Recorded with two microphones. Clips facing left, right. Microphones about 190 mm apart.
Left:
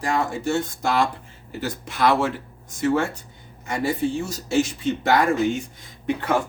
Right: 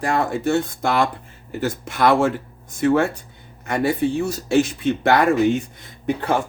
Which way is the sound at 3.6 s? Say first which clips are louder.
Right 4 dB; 60° right (ahead or behind).